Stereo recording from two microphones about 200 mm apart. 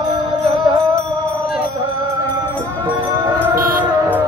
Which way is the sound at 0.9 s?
5° left (ahead or behind).